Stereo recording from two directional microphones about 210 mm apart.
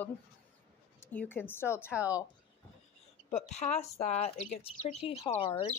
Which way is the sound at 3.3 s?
30° left (ahead or behind).